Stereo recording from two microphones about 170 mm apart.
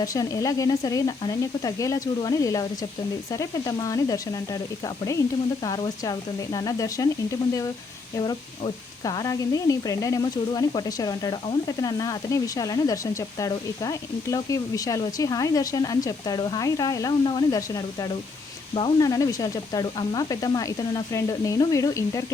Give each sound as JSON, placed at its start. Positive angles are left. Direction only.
{"t": 0.0, "sound": "speech", "side_deg": 20}
{"t": 5.6, "sound": "speech", "side_deg": 20}
{"t": 8.1, "sound": "speech", "side_deg": 25}